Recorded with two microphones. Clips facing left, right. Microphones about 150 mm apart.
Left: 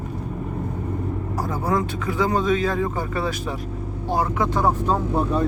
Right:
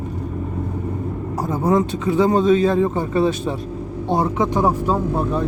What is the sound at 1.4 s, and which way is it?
Speech, 20° right (ahead or behind).